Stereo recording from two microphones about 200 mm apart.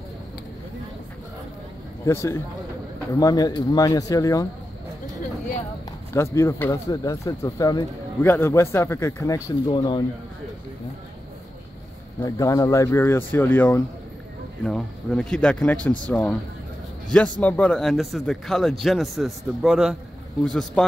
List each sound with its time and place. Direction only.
2.0 s speech: 15° left (ahead or behind)
6.1 s speech: 15° left (ahead or behind)
12.2 s a man's voice: 15° left (ahead or behind)